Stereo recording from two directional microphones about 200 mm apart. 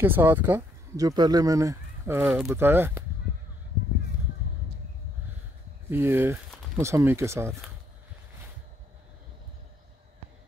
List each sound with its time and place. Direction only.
0.0 s speech: 10° right (ahead or behind)
5.9 s speech: 10° right (ahead or behind)